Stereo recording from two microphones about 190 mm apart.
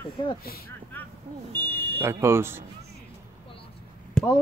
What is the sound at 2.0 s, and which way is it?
Speech, 15° right (ahead or behind).